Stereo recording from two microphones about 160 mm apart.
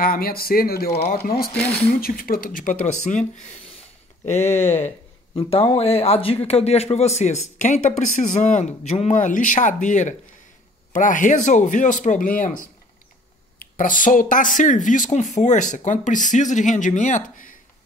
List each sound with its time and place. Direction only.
0.0 s speech: 65° left (ahead or behind)
2.0 s speech: 65° left (ahead or behind)
4.8 s a man's voice: 35° left (ahead or behind); by 17.6 s 55° left (ahead or behind)